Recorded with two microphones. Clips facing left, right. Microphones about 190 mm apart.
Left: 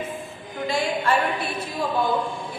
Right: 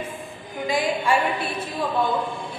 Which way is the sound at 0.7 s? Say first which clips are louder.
Right 1 dB; 15° right (ahead or behind).